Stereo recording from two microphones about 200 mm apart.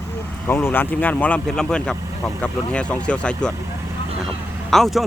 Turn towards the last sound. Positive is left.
turn(degrees=0)  # may be behind; listen again after turning